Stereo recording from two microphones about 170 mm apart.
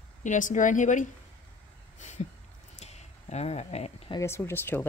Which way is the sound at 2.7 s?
40° left (ahead or behind).